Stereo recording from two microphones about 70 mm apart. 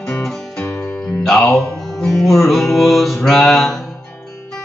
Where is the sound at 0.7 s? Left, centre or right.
Left.